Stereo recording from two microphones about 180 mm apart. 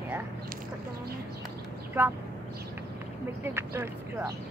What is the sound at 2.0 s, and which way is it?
Speech, 10° right (ahead or behind).